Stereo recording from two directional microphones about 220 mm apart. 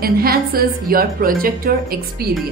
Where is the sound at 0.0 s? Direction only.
45° right (ahead or behind).